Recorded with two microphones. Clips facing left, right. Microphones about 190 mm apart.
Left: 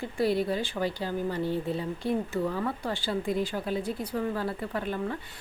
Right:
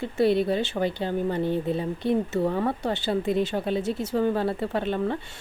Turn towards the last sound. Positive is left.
turn(degrees=-25)  # may be behind; listen again after turning